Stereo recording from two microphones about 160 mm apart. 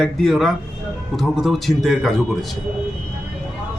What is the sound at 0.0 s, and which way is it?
A man's voice, centre (ahead or behind).